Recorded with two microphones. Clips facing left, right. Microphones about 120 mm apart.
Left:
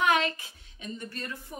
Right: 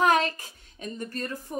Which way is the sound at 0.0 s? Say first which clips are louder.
Right 3 dB; 40° right (ahead or behind).